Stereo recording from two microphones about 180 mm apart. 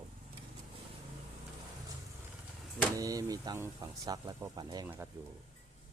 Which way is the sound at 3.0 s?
20° right (ahead or behind).